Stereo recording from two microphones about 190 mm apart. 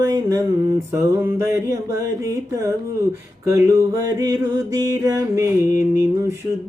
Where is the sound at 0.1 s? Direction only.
20° right (ahead or behind).